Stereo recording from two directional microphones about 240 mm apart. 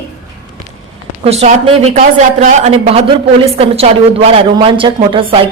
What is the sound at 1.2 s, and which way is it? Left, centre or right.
Speech, right.